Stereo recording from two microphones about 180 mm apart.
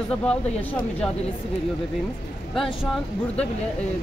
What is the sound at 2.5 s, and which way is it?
Speech, centre (ahead or behind).